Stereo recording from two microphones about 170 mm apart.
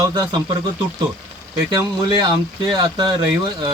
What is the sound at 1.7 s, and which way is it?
Speech, 25° right (ahead or behind).